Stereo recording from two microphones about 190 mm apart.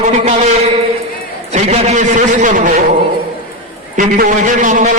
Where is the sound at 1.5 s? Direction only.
35° right (ahead or behind).